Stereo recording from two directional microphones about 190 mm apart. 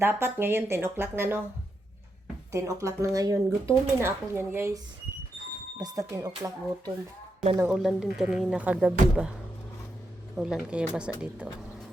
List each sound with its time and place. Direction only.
0.0 s speech: 10° right (ahead or behind)
2.5 s speech: 15° right (ahead or behind)
5.8 s speech: 20° right (ahead or behind)
7.5 s speech: 10° right (ahead or behind)
10.3 s speech: 5° right (ahead or behind)